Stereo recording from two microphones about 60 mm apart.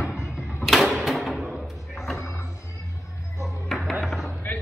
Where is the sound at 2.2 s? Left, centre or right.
Left.